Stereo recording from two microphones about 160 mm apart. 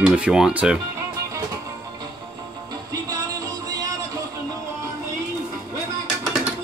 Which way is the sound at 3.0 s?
25° right (ahead or behind).